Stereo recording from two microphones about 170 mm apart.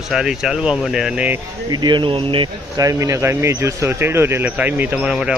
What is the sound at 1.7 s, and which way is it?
Speech, 25° right (ahead or behind).